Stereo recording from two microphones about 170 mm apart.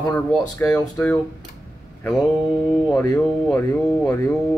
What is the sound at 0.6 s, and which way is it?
Speech, 10° left (ahead or behind).